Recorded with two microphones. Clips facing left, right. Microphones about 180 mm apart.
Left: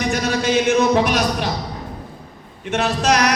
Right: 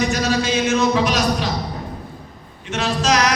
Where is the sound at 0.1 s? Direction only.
55° left (ahead or behind).